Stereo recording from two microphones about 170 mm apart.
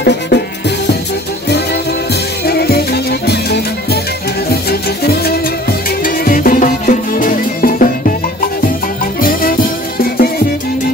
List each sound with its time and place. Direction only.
0.0 s music: 80° left
2.4 s music: 70° left (ahead or behind)
9.2 s music: 55° left (ahead or behind)